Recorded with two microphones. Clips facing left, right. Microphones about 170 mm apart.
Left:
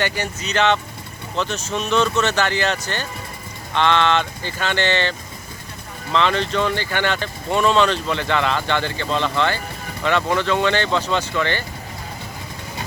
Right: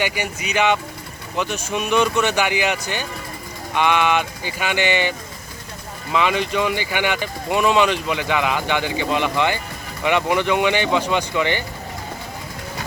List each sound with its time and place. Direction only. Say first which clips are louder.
0.0 s speech: even; 10° right (ahead or behind)